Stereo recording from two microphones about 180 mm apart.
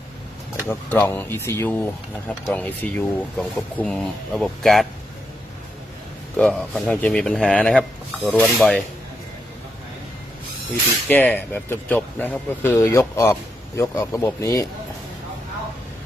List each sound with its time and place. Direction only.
0.7 s speech: 10° left (ahead or behind)
6.3 s speech: 5° left (ahead or behind)
11.1 s speech: 10° left (ahead or behind)